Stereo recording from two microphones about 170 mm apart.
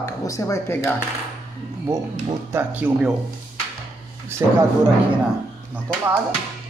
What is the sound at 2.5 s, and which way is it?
Speech, 10° right (ahead or behind).